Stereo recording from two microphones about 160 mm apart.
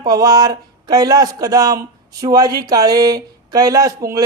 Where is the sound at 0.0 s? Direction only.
25° right (ahead or behind).